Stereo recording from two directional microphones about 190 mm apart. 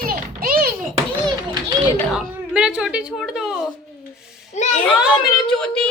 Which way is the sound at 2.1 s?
5° right (ahead or behind).